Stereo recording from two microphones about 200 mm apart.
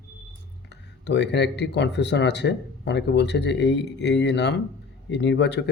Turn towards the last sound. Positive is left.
turn(degrees=60)  # may be behind; listen again after turning